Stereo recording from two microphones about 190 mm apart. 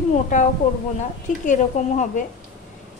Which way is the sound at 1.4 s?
40° left (ahead or behind).